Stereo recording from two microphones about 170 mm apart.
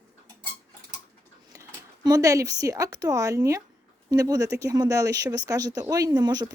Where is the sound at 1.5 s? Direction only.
20° right (ahead or behind).